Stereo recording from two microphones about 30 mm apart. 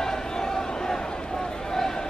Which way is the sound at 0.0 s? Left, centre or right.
Centre.